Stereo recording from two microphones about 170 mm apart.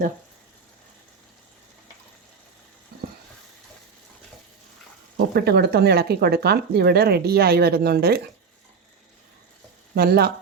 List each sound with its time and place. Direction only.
5.3 s speech: 65° right (ahead or behind)
9.9 s speech: 70° right (ahead or behind)